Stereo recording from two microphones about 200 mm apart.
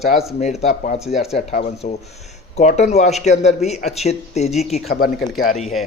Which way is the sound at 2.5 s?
35° left (ahead or behind).